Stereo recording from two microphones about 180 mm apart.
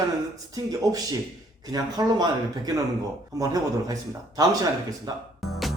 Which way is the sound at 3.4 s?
20° right (ahead or behind).